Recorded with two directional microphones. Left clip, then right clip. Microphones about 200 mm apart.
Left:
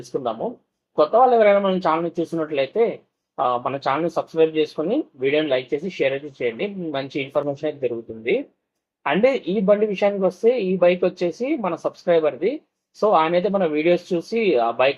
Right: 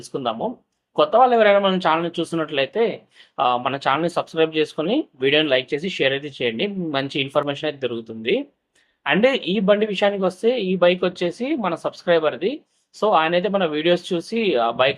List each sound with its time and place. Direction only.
1.1 s speech: 10° right (ahead or behind)
2.6 s speech: 5° right (ahead or behind)
9.0 s speech: 5° right (ahead or behind)